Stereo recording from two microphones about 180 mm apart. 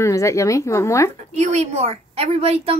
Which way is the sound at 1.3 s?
35° right (ahead or behind).